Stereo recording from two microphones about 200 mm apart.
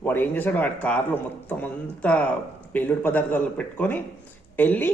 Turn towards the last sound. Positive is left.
turn(degrees=10)  # may be behind; listen again after turning